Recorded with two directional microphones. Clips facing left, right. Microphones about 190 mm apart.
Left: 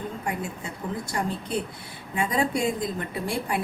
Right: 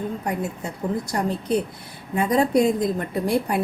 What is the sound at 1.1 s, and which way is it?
A woman's voice, 45° right (ahead or behind).